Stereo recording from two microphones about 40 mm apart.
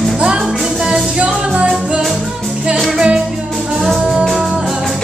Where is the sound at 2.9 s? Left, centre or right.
Right.